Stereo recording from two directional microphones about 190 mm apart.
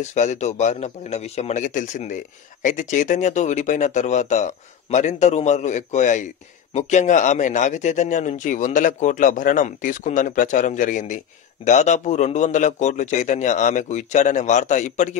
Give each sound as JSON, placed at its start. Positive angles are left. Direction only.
{"t": 0.0, "sound": "speech", "side_deg": 40}